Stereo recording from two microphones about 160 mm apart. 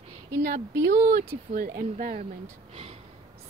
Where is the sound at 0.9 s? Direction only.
70° right (ahead or behind).